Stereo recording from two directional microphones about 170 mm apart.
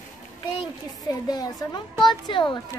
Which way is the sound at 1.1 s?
20° left (ahead or behind).